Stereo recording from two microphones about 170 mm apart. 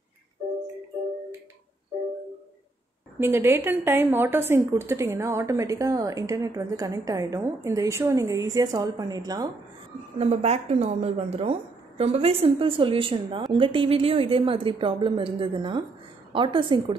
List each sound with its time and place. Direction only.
3.2 s a woman's voice: 15° right (ahead or behind)
10.1 s a woman's voice: 40° right (ahead or behind)